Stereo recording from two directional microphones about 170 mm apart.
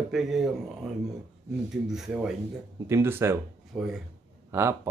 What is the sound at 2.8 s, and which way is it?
Speech, 15° right (ahead or behind).